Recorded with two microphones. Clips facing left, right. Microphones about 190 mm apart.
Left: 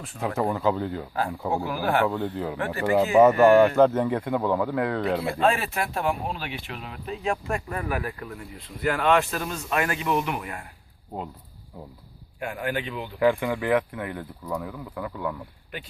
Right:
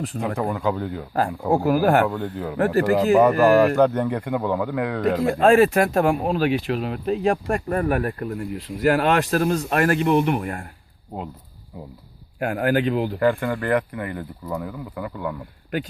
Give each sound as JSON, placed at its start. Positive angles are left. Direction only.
{"t": 0.3, "sound": "speech", "side_deg": 0}
{"t": 1.5, "sound": "speech", "side_deg": -45}
{"t": 2.0, "sound": "speech", "side_deg": 0}
{"t": 2.6, "sound": "speech", "side_deg": -40}
{"t": 3.0, "sound": "speech", "side_deg": 0}
{"t": 5.2, "sound": "speech", "side_deg": -45}
{"t": 6.0, "sound": "speech", "side_deg": -65}
{"t": 12.4, "sound": "speech", "side_deg": -70}
{"t": 13.1, "sound": "speech", "side_deg": 0}